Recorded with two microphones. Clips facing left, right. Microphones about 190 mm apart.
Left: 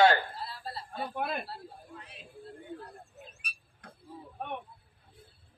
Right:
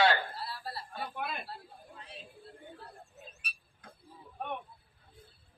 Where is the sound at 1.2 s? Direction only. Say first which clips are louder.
Left 6 dB; 45° left (ahead or behind).